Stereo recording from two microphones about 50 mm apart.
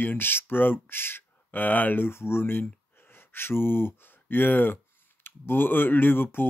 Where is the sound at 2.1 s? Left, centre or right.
Left.